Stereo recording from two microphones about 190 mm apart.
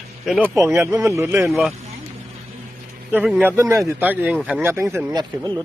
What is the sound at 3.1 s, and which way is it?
A man's voice, 5° right (ahead or behind).